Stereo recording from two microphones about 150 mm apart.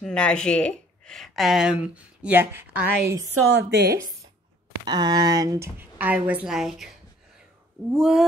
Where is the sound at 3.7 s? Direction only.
90° right.